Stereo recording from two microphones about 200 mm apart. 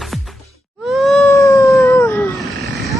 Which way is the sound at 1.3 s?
15° left (ahead or behind).